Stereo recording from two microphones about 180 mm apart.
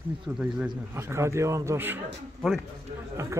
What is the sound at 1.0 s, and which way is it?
A man's voice, 15° right (ahead or behind).